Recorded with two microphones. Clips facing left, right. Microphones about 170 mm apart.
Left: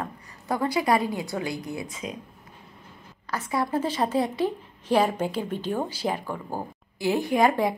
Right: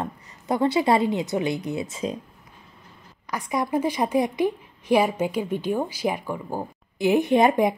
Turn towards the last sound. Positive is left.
turn(degrees=-20)  # may be behind; listen again after turning